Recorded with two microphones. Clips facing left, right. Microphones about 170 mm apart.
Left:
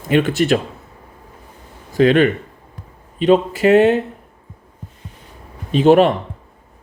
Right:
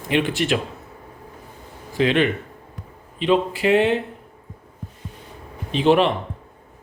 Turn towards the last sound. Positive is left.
turn(degrees=45)  # may be behind; listen again after turning